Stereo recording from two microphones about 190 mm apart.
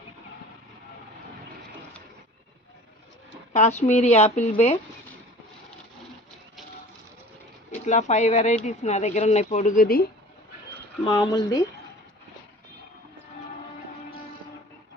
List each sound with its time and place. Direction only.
3.5 s speech: 35° left (ahead or behind)
7.7 s speech: 40° left (ahead or behind)
11.0 s speech: 20° left (ahead or behind)